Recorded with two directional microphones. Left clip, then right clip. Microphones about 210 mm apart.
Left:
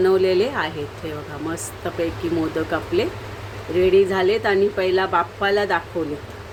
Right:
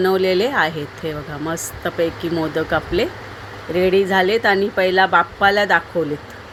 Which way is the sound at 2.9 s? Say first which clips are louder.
Right 2 dB; 25° right (ahead or behind).